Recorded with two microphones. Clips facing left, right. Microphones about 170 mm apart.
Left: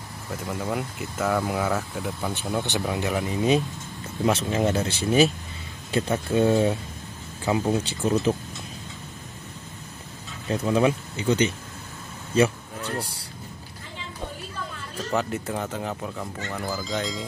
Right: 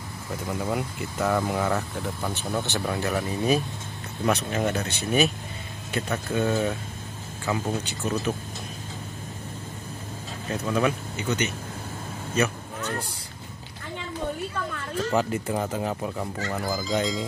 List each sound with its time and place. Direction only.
0.5 s speech: centre (ahead or behind); by 8.1 s 30° left (ahead or behind)
10.5 s speech: 30° left (ahead or behind)
15.1 s speech: centre (ahead or behind)
16.8 s speech: centre (ahead or behind)